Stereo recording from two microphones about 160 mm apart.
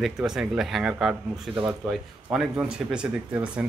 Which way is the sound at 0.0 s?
5° right (ahead or behind).